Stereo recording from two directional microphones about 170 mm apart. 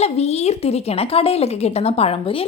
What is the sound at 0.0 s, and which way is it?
A woman's voice, 40° left (ahead or behind).